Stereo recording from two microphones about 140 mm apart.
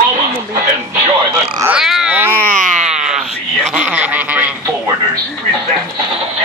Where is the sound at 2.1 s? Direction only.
15° right (ahead or behind).